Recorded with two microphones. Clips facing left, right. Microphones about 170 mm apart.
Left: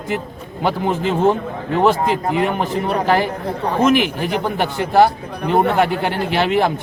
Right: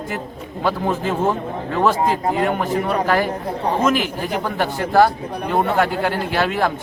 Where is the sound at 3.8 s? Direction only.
20° left (ahead or behind).